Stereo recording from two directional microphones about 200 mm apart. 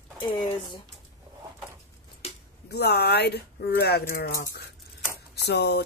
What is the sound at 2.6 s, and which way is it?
Speech, 55° left (ahead or behind).